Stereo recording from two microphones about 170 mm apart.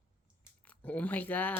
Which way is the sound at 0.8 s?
10° left (ahead or behind).